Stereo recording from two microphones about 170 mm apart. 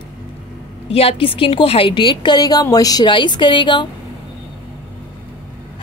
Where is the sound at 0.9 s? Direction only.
35° left (ahead or behind).